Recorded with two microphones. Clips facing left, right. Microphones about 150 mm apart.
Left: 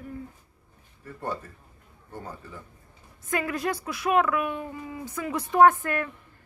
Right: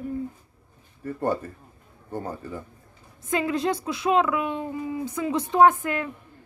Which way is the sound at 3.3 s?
20° right (ahead or behind).